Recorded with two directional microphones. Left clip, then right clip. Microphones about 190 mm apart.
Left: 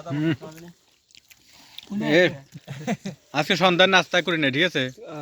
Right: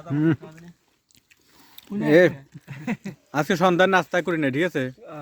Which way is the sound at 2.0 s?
45° right (ahead or behind).